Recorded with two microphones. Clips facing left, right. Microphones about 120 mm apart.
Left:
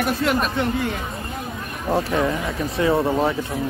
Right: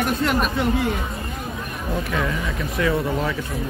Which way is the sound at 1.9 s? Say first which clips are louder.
Left 5 dB; 35° left (ahead or behind).